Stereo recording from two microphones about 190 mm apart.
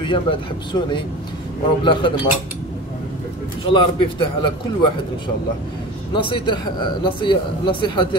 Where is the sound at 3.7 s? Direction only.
25° left (ahead or behind).